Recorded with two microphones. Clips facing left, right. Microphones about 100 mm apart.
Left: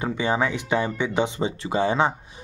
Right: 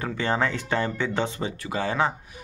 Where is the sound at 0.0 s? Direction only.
15° left (ahead or behind).